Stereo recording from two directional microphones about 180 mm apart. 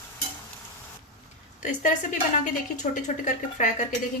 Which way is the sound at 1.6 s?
45° left (ahead or behind).